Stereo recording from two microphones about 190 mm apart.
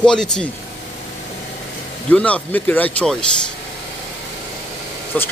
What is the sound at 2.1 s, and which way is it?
Speech, 5° left (ahead or behind).